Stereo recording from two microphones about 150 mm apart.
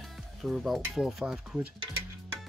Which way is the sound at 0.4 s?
Centre (ahead or behind).